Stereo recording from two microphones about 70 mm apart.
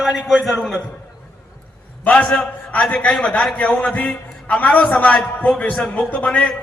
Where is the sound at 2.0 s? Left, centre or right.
Centre.